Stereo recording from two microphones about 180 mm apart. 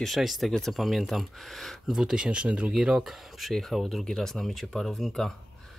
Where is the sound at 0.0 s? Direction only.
Centre (ahead or behind).